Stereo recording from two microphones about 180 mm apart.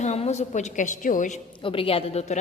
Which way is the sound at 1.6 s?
30° left (ahead or behind).